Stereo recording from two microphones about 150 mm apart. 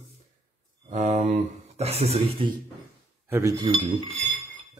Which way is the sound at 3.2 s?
15° right (ahead or behind).